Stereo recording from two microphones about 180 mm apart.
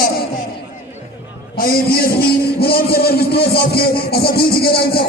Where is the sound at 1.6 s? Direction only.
55° left (ahead or behind).